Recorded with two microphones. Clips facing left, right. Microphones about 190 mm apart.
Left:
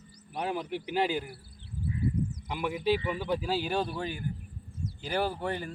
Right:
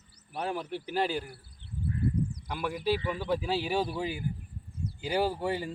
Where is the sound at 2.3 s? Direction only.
20° left (ahead or behind).